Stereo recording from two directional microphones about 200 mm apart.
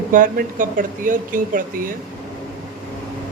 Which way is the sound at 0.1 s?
45° right (ahead or behind).